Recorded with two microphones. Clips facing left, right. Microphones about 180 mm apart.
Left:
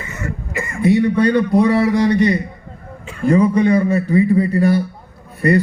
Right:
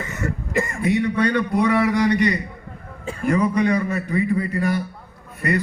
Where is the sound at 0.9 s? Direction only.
30° left (ahead or behind).